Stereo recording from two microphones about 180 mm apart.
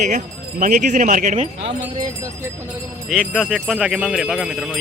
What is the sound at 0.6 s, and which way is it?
Speech, 45° right (ahead or behind).